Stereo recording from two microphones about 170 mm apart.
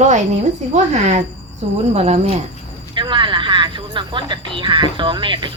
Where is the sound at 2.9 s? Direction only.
30° right (ahead or behind).